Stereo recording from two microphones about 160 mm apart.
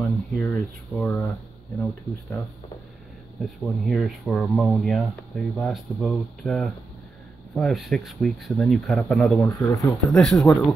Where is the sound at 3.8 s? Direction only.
Centre (ahead or behind).